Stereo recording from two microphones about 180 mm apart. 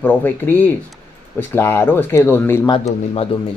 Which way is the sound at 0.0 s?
10° left (ahead or behind).